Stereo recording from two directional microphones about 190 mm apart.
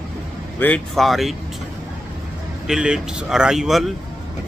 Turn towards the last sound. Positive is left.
turn(degrees=0)  # may be behind; listen again after turning